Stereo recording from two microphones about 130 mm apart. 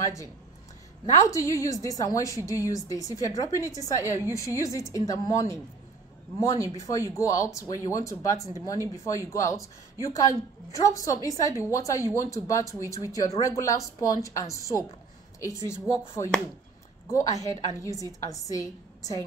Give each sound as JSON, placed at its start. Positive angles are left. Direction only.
{"t": 0.0, "sound": "a woman's voice", "side_deg": 25}
{"t": 1.3, "sound": "a woman's voice", "side_deg": 25}
{"t": 6.8, "sound": "a woman's voice", "side_deg": 25}